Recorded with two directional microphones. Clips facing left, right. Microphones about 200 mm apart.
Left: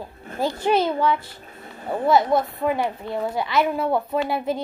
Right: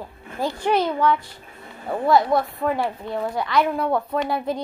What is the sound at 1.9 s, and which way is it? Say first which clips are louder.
Speech: even; centre (ahead or behind).